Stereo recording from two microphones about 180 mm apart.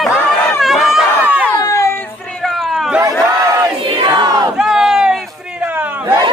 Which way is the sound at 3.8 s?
25° right (ahead or behind).